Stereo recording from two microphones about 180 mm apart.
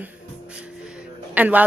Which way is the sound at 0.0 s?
5° right (ahead or behind).